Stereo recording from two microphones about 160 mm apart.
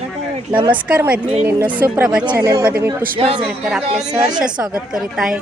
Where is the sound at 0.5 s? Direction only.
30° right (ahead or behind).